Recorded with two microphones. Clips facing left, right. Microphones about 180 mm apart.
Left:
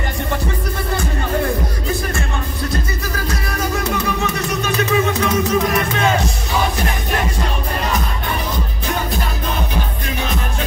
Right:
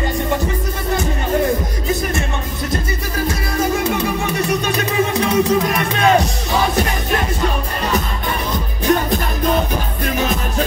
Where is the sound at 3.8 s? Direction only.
25° right (ahead or behind).